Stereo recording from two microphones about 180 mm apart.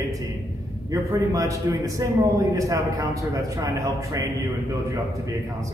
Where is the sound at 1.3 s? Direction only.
20° right (ahead or behind).